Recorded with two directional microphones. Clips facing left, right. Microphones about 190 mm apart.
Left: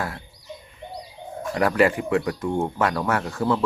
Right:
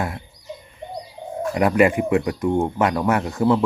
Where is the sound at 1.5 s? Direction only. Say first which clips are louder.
Right 3 dB; 15° right (ahead or behind).